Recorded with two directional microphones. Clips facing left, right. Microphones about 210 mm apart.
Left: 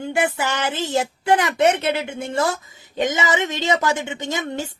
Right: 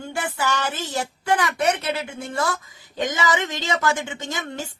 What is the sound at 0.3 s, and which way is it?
A woman's voice, 20° left (ahead or behind).